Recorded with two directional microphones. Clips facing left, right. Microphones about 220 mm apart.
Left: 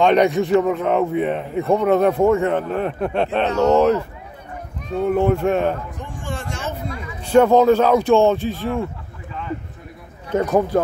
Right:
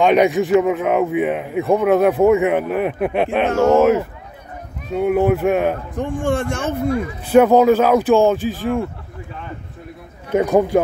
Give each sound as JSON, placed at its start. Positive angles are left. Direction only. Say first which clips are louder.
{"t": 0.0, "sound": "a man's voice", "louder": "right 1 dB", "side_deg": -5}
{"t": 3.4, "sound": "speech", "louder": "right 2 dB", "side_deg": -50}
{"t": 4.9, "sound": "a man's voice", "louder": "right 2 dB", "side_deg": -10}
{"t": 5.9, "sound": "speech", "louder": "right 11 dB", "side_deg": -55}
{"t": 7.2, "sound": "speech", "louder": "right 1 dB", "side_deg": -5}
{"t": 10.3, "sound": "a man's voice", "louder": "right 3 dB", "side_deg": -10}